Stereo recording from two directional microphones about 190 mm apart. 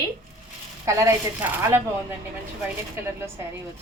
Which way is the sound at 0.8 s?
15° right (ahead or behind).